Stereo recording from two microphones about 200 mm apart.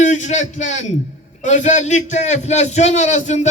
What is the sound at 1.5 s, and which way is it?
A man's voice, 35° left (ahead or behind).